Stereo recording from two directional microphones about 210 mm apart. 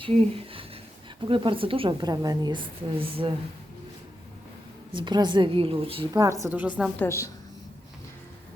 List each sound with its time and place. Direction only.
0.0 s a woman's voice: 25° right (ahead or behind)
4.9 s a woman's voice: 20° right (ahead or behind)
6.2 s a woman's voice: 15° right (ahead or behind)
7.0 s a woman's voice: 15° left (ahead or behind)